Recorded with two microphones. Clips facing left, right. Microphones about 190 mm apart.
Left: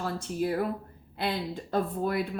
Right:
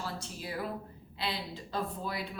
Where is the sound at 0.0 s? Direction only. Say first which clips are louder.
Left 10 dB; 50° left (ahead or behind).